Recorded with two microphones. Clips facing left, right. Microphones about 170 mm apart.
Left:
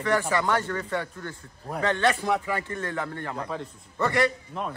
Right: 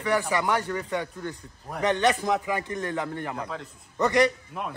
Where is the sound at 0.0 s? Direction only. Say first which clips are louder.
Left 1 dB; 15° right (ahead or behind).